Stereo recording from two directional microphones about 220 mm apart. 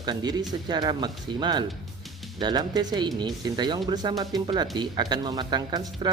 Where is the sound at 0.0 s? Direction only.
20° right (ahead or behind).